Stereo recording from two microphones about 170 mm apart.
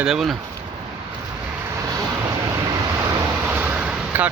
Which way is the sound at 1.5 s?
15° right (ahead or behind).